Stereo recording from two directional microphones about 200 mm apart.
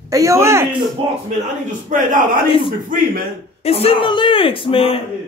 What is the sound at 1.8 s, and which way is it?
Speech, 40° right (ahead or behind).